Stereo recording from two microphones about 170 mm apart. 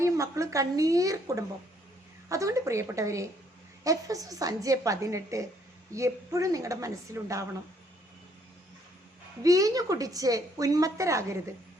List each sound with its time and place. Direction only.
0.0 s a woman's voice: 15° right (ahead or behind)
9.4 s a woman's voice: 20° right (ahead or behind)